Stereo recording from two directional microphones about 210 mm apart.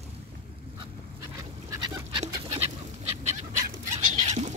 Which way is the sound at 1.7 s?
20° right (ahead or behind).